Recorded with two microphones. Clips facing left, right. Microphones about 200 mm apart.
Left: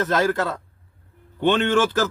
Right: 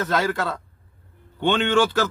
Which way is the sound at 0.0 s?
Centre (ahead or behind).